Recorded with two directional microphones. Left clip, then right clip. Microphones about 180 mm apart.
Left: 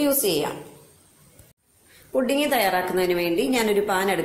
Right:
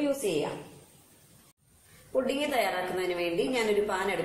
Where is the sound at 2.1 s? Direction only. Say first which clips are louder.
Left 7 dB; 50° left (ahead or behind).